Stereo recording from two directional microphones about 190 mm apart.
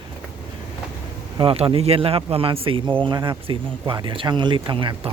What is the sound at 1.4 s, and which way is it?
Speech, 30° right (ahead or behind).